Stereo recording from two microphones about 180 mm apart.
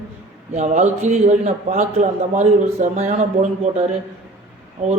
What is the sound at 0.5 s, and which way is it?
A man's voice, 40° right (ahead or behind).